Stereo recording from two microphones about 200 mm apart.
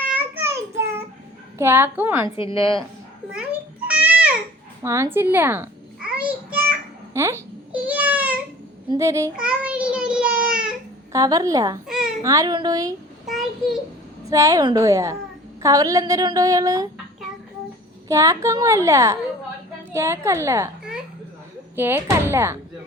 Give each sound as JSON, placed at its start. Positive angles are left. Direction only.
{"t": 0.1, "sound": "child singing", "side_deg": -10}
{"t": 1.5, "sound": "a woman's voice", "side_deg": -10}
{"t": 2.2, "sound": "a woman's voice", "side_deg": 25}
{"t": 3.3, "sound": "babbling", "side_deg": -5}
{"t": 8.9, "sound": "child singing", "side_deg": -15}
{"t": 11.1, "sound": "a woman's voice", "side_deg": -20}
{"t": 13.2, "sound": "a sound", "side_deg": 0}
{"t": 14.3, "sound": "a woman's voice", "side_deg": -15}
{"t": 18.1, "sound": "a woman's voice", "side_deg": -15}
{"t": 21.8, "sound": "a woman's voice", "side_deg": -10}